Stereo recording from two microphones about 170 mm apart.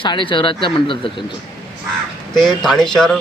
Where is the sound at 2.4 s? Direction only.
Centre (ahead or behind).